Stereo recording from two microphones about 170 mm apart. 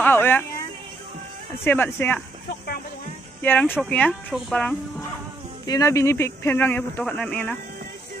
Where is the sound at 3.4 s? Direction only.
10° left (ahead or behind).